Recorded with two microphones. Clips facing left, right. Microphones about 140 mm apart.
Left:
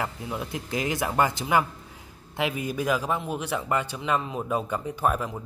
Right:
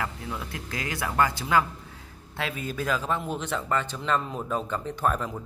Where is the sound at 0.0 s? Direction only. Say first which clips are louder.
Left 2 dB; 20° left (ahead or behind).